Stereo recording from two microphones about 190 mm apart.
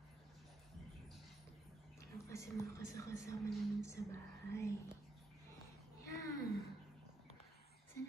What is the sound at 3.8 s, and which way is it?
Whispering, 15° left (ahead or behind).